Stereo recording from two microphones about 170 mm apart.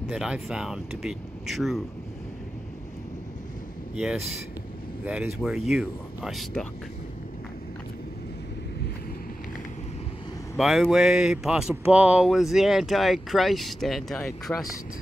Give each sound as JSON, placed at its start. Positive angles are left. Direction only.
{"t": 0.0, "sound": "speech", "side_deg": -5}
{"t": 3.9, "sound": "speech", "side_deg": -5}
{"t": 10.6, "sound": "speech", "side_deg": 0}
{"t": 14.5, "sound": "speech", "side_deg": 20}